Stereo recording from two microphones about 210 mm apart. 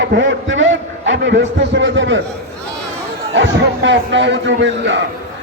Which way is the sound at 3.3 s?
60° right (ahead or behind).